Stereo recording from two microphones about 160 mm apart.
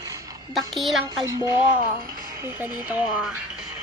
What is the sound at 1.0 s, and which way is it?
Music, 25° right (ahead or behind).